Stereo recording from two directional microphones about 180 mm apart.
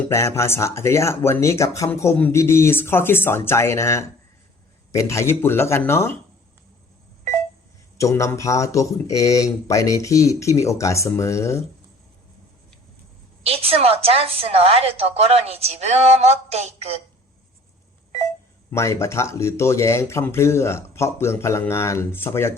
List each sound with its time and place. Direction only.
0.1 s speech: 15° left (ahead or behind)
7.9 s speech: 15° left (ahead or behind)
13.4 s a woman's voice: 35° right (ahead or behind)
18.7 s speech: 15° left (ahead or behind)